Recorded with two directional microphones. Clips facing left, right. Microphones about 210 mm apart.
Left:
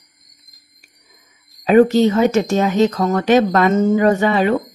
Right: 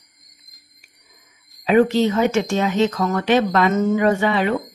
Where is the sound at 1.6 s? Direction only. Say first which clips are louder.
Left 4 dB; 45° left (ahead or behind).